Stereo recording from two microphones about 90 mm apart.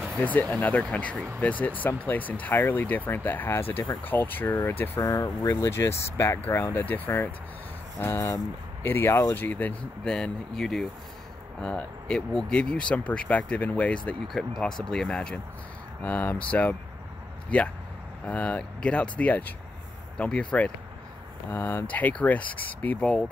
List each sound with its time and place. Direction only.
0.2 s speech: 15° left (ahead or behind)
5.0 s speech: 40° left (ahead or behind); by 9.8 s 20° left (ahead or behind)
10.0 s speech: 10° left (ahead or behind)
14.2 s speech: centre (ahead or behind); by 23.0 s 15° left (ahead or behind)